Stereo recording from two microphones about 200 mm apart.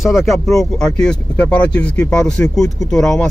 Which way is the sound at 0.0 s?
Centre (ahead or behind).